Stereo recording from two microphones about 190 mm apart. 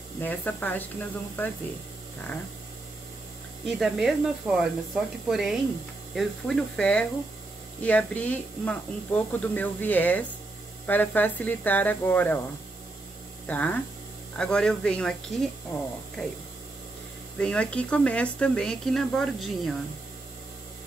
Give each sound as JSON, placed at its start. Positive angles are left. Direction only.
{"t": 0.2, "sound": "speech", "side_deg": 10}
{"t": 3.8, "sound": "speech", "side_deg": 0}
{"t": 13.5, "sound": "speech", "side_deg": 10}
{"t": 17.4, "sound": "speech", "side_deg": 5}